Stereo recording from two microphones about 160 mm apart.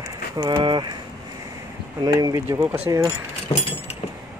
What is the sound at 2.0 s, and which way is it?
Speech, 20° right (ahead or behind).